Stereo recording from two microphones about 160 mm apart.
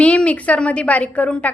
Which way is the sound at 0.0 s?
5° left (ahead or behind).